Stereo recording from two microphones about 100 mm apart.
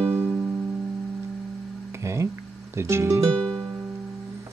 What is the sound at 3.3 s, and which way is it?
Music, 5° left (ahead or behind).